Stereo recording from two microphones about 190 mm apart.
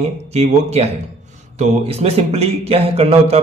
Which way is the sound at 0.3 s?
35° right (ahead or behind).